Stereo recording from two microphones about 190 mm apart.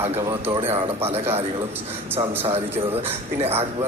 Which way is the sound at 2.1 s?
15° right (ahead or behind).